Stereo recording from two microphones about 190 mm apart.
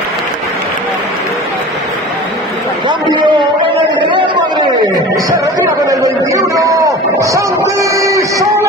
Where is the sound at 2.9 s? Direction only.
25° right (ahead or behind).